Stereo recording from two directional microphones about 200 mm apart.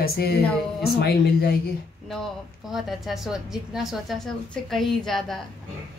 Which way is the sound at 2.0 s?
Centre (ahead or behind).